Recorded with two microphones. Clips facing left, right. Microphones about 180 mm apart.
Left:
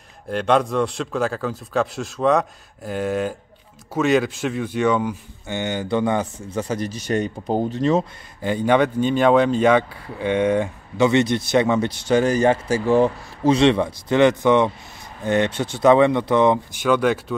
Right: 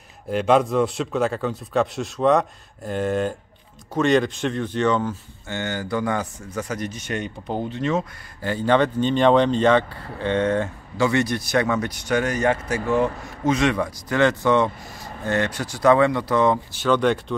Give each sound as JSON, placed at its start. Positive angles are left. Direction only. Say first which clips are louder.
{"t": 0.3, "sound": "speech", "louder": "right 1 dB", "side_deg": 0}
{"t": 8.4, "sound": "speech", "louder": "left 2 dB", "side_deg": 20}